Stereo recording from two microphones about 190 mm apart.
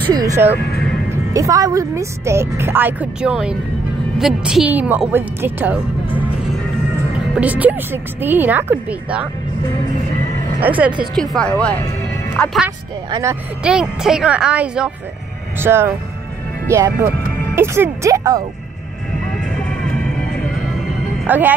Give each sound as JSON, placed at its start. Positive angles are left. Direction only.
{"t": 0.1, "sound": "speech", "side_deg": -20}
{"t": 7.3, "sound": "speech", "side_deg": -10}
{"t": 10.6, "sound": "speech", "side_deg": -10}
{"t": 11.0, "sound": "speech", "side_deg": 5}
{"t": 11.8, "sound": "music", "side_deg": 15}
{"t": 13.1, "sound": "speech", "side_deg": -15}
{"t": 19.3, "sound": "music", "side_deg": 5}
{"t": 21.2, "sound": "speech", "side_deg": -10}